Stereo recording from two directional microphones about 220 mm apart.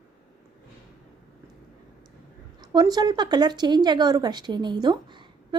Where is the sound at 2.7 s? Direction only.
20° right (ahead or behind).